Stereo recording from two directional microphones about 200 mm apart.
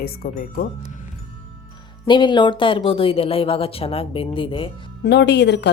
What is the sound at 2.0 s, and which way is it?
Speech, 25° left (ahead or behind).